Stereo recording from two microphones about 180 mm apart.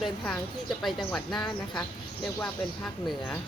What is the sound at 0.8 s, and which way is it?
Speech, centre (ahead or behind).